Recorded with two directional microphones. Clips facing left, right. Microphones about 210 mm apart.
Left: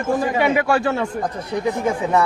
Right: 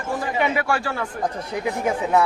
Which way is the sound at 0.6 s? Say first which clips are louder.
Left 5 dB; 20° left (ahead or behind).